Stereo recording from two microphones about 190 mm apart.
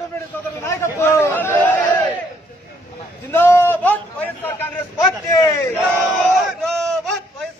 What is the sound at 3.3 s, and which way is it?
A man's voice, 10° left (ahead or behind).